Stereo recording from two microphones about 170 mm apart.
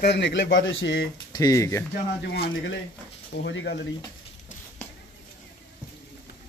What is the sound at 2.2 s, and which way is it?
Speech, 70° left (ahead or behind).